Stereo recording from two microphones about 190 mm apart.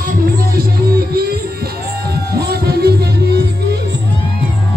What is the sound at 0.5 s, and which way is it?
Music, 55° right (ahead or behind).